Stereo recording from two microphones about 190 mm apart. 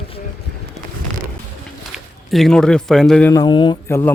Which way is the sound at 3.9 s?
15° left (ahead or behind).